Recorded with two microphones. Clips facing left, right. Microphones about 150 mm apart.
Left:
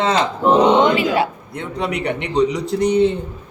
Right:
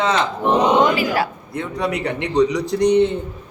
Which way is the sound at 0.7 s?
25° left (ahead or behind).